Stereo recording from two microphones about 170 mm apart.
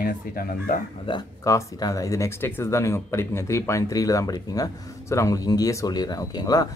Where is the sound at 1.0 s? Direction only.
25° left (ahead or behind).